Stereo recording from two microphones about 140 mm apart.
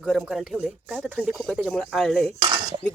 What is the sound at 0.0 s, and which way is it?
Speech, 5° right (ahead or behind).